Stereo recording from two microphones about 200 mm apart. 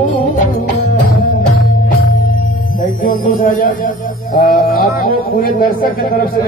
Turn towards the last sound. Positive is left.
turn(degrees=45)  # may be behind; listen again after turning